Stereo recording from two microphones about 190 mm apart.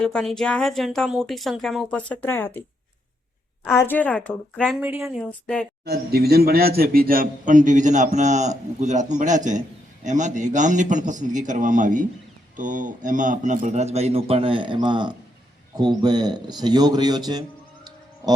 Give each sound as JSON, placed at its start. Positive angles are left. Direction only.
{"t": 0.0, "sound": "speech", "side_deg": 5}
{"t": 3.6, "sound": "a woman's voice", "side_deg": 10}
{"t": 4.8, "sound": "speech", "side_deg": -10}
{"t": 5.3, "sound": "speech", "side_deg": 5}
{"t": 5.8, "sound": "a man's voice", "side_deg": -55}